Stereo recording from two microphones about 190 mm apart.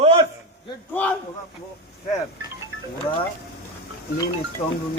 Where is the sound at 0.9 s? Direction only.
10° left (ahead or behind).